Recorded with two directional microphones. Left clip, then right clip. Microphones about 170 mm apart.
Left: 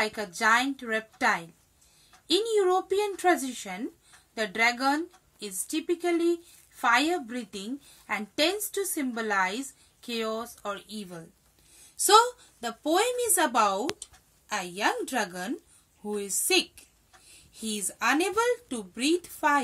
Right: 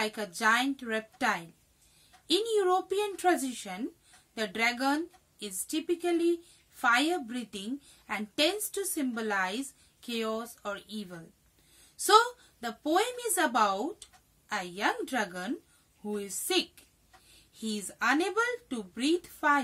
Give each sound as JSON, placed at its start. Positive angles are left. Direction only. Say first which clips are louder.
{"t": 0.0, "sound": "a woman's voice", "louder": "left 3 dB", "side_deg": -30}
{"t": 17.6, "sound": "a woman's voice", "louder": "left 2 dB", "side_deg": -25}